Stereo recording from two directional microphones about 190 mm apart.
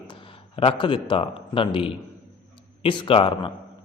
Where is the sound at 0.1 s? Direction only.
30° left (ahead or behind).